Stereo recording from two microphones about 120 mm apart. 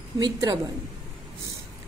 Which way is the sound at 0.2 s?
30° right (ahead or behind).